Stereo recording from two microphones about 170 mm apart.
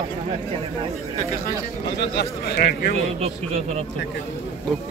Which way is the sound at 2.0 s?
75° left (ahead or behind).